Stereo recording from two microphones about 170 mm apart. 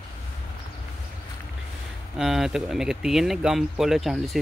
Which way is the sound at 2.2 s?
Centre (ahead or behind).